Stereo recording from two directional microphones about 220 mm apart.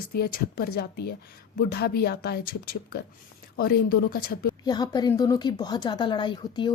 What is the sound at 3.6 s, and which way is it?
Speech, 45° left (ahead or behind).